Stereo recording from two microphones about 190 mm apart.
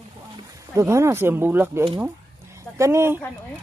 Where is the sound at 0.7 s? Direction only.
15° right (ahead or behind).